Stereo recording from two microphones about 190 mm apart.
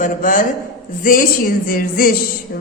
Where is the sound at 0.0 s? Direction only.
45° left (ahead or behind).